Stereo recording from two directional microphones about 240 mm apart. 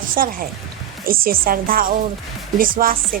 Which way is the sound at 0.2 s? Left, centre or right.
Right.